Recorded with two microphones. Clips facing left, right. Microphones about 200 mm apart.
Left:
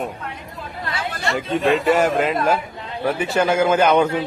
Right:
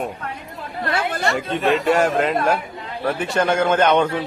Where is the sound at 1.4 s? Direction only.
Centre (ahead or behind).